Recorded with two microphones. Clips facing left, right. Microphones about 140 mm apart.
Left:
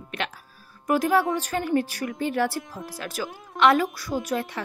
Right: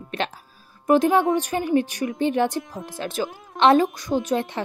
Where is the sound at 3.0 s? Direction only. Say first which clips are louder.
Right 6 dB; 25° right (ahead or behind).